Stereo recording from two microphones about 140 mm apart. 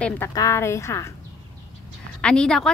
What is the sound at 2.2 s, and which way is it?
Speech, 5° left (ahead or behind).